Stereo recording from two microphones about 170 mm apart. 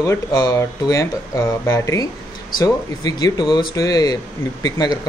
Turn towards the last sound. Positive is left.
turn(degrees=25)  # may be behind; listen again after turning